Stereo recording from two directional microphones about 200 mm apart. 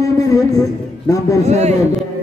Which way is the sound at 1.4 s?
35° right (ahead or behind).